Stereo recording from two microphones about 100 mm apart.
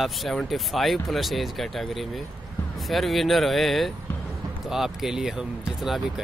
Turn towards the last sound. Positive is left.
turn(degrees=-5)  # may be behind; listen again after turning